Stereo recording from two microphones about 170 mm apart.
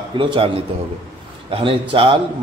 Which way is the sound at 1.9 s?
35° right (ahead or behind).